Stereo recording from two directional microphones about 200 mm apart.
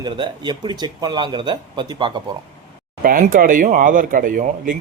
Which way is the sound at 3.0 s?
45° right (ahead or behind).